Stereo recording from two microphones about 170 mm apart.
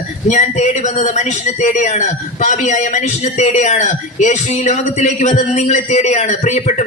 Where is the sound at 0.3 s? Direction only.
45° left (ahead or behind).